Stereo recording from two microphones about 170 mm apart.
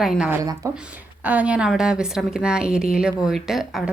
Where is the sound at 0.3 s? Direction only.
20° right (ahead or behind).